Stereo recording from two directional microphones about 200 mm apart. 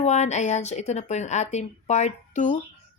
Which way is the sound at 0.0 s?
35° left (ahead or behind).